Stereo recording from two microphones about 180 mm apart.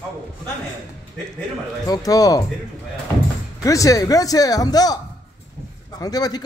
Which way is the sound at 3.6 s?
20° left (ahead or behind).